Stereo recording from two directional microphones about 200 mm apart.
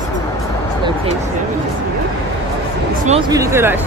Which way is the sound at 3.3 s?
15° right (ahead or behind).